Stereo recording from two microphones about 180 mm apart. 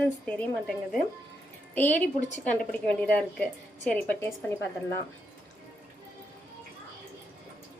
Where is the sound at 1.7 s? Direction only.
10° left (ahead or behind).